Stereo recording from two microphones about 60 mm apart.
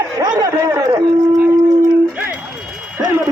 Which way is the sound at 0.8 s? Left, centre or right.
Right.